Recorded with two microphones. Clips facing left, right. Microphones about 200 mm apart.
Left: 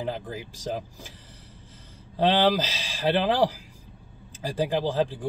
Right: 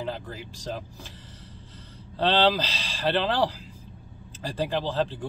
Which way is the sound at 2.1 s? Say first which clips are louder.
Left 1 dB; 15° left (ahead or behind).